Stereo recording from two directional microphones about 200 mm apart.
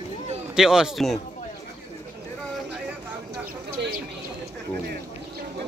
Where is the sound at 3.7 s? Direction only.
50° right (ahead or behind).